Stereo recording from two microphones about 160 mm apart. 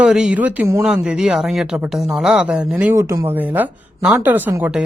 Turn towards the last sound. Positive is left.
turn(degrees=-10)  # may be behind; listen again after turning